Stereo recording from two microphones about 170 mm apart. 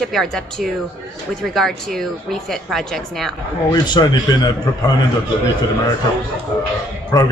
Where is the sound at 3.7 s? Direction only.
25° left (ahead or behind).